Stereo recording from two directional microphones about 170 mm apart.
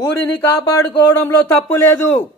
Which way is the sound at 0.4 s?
15° left (ahead or behind).